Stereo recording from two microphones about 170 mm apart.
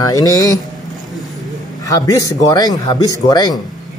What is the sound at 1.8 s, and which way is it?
Speech, 20° left (ahead or behind).